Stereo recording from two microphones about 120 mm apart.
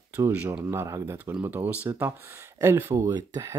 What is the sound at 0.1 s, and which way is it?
Speech, 15° right (ahead or behind).